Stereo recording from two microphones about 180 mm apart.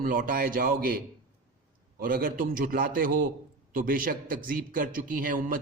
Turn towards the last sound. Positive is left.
turn(degrees=-50)  # may be behind; listen again after turning